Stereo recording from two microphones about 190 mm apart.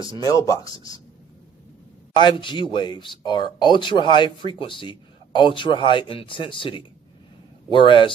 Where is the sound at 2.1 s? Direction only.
25° left (ahead or behind).